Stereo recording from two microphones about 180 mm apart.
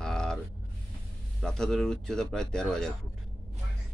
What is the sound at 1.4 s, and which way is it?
Speech, 5° left (ahead or behind).